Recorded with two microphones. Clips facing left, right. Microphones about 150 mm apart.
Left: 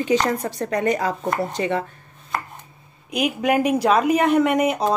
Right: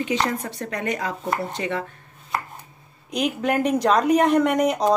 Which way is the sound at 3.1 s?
10° left (ahead or behind).